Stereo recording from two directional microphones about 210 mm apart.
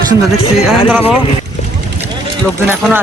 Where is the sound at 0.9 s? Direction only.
10° right (ahead or behind).